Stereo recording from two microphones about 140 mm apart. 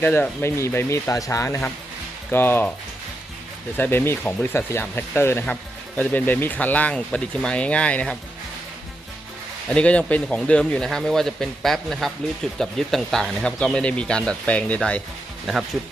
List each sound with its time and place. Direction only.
0.0 s speech: 15° left (ahead or behind)
3.8 s speech: 15° left (ahead or behind)
9.6 s speech: 10° left (ahead or behind)